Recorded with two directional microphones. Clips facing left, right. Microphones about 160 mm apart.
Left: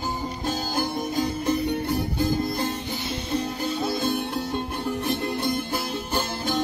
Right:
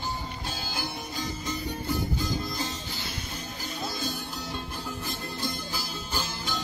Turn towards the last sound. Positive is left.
turn(degrees=55)  # may be behind; listen again after turning